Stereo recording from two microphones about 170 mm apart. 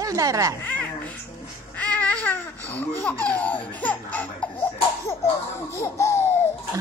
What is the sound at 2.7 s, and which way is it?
Speech, 10° left (ahead or behind).